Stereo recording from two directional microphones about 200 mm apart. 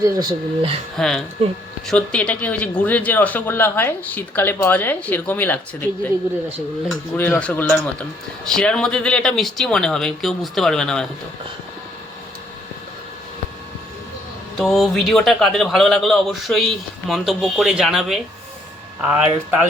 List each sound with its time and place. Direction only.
0.0 s speech: 20° right (ahead or behind)
0.9 s speech: centre (ahead or behind)
14.6 s speech: centre (ahead or behind)